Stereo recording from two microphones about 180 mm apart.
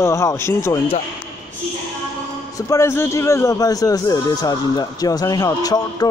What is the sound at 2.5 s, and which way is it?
A man's voice, 15° left (ahead or behind).